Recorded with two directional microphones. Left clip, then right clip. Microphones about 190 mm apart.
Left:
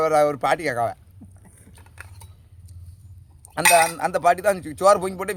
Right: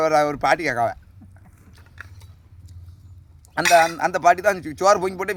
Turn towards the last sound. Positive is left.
turn(degrees=-5)  # may be behind; listen again after turning